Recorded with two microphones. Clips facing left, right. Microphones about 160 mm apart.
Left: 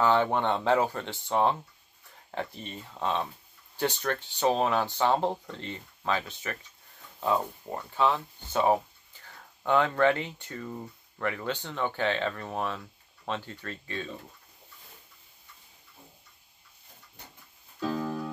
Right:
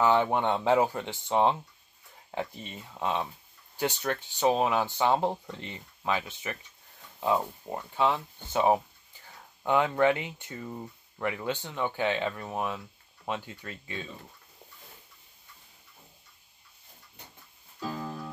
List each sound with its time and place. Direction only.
0.0 s speech: 15° right (ahead or behind)